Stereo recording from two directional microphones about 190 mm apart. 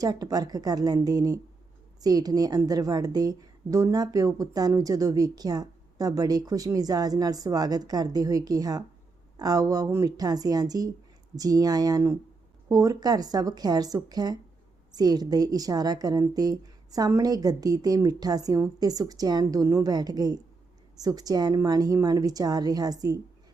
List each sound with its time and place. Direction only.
0.0 s a woman's voice: 20° right (ahead or behind)